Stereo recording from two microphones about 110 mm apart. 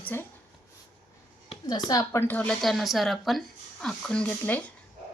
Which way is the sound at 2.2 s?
20° left (ahead or behind).